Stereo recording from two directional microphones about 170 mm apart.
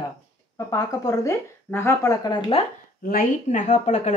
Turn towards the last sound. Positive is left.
turn(degrees=45)  # may be behind; listen again after turning